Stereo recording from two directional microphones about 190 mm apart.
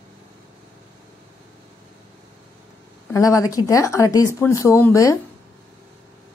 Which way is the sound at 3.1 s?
15° left (ahead or behind).